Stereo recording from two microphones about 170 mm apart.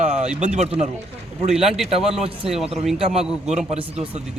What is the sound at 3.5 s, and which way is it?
Speech, 40° right (ahead or behind).